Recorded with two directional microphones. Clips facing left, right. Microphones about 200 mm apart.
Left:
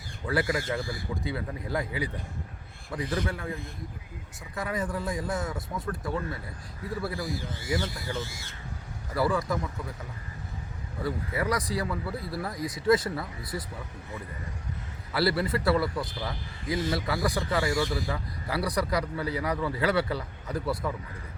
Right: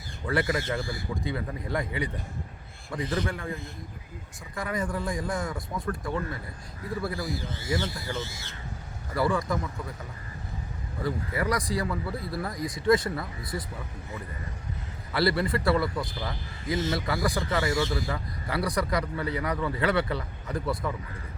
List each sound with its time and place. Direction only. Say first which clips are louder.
0.3 s a man's voice: right 1 dB; centre (ahead or behind)
3.1 s a man's voice: right 1 dB; 5° left (ahead or behind)
4.5 s a man's voice: right 1 dB; 5° left (ahead or behind)
7.7 s a man's voice: right 1 dB; centre (ahead or behind)
11.0 s a man's voice: right 1 dB; 5° left (ahead or behind)
15.1 s a man's voice: right 1 dB; 5° left (ahead or behind)
16.6 s a man's voice: right 1 dB; 25° right (ahead or behind)
16.9 s a man's voice: even; 5° left (ahead or behind)